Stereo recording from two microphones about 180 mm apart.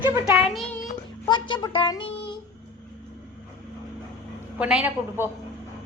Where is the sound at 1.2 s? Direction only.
25° left (ahead or behind).